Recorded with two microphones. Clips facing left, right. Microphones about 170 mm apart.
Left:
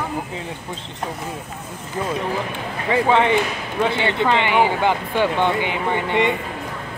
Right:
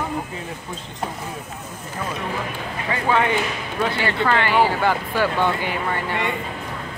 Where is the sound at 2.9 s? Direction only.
25° left (ahead or behind).